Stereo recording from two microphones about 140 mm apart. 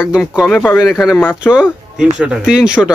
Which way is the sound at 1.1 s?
10° left (ahead or behind).